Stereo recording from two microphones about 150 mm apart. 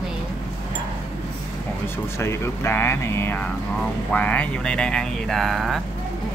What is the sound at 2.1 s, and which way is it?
Speech, 15° left (ahead or behind).